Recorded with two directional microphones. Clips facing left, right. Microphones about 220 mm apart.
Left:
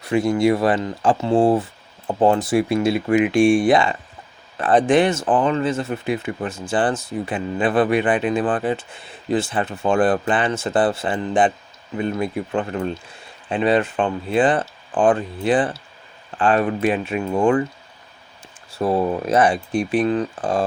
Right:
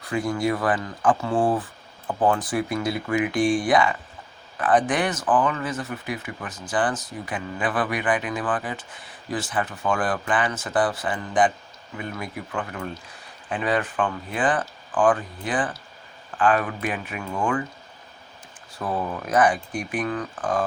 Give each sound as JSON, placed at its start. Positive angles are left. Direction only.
{"t": 0.0, "sound": "speech", "side_deg": 25}
{"t": 18.8, "sound": "speech", "side_deg": 30}